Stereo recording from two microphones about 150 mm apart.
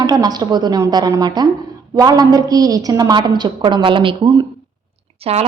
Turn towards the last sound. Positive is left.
turn(degrees=-40)  # may be behind; listen again after turning